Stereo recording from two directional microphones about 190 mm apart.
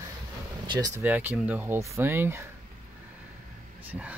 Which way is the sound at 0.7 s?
20° right (ahead or behind).